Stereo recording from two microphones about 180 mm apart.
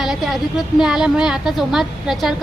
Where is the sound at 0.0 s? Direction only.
Centre (ahead or behind).